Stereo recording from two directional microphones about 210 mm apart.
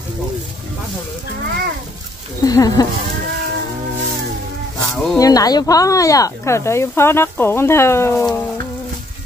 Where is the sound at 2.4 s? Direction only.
15° left (ahead or behind).